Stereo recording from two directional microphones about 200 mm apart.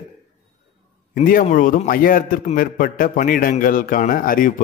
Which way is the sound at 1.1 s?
45° left (ahead or behind).